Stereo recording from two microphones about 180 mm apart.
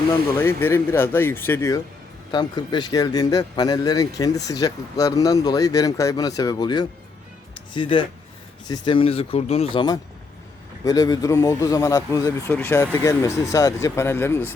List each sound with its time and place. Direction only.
0.3 s speech: 10° left (ahead or behind)
7.5 s music: 25° left (ahead or behind)
8.6 s speech: 25° left (ahead or behind)